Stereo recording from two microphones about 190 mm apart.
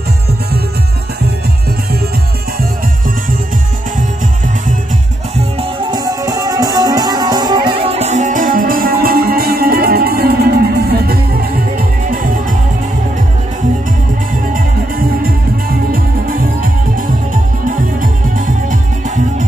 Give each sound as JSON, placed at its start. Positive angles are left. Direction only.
{"t": 5.6, "sound": "music", "side_deg": -20}
{"t": 14.5, "sound": "music", "side_deg": -50}